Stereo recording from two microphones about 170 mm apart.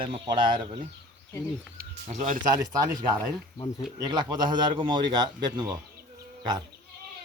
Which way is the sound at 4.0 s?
25° right (ahead or behind).